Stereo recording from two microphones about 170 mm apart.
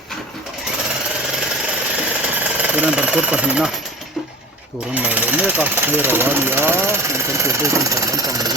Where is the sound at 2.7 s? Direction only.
10° right (ahead or behind).